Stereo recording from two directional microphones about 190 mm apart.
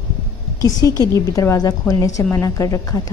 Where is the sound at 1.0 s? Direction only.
15° left (ahead or behind).